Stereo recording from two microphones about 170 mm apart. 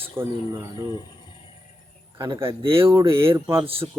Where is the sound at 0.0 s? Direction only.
15° right (ahead or behind).